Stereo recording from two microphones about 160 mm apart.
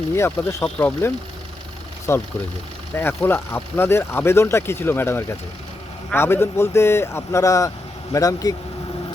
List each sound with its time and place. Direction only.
0.2 s speech: 10° left (ahead or behind)